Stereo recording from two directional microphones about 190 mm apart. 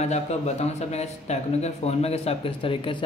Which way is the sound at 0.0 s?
35° left (ahead or behind).